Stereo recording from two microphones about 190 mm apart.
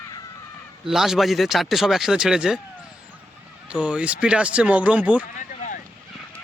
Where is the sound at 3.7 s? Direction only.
5° right (ahead or behind).